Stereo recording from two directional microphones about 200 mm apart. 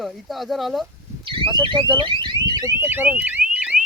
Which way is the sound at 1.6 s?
25° right (ahead or behind).